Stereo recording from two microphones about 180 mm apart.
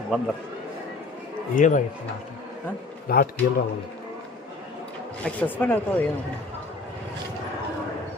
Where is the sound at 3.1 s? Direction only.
55° left (ahead or behind).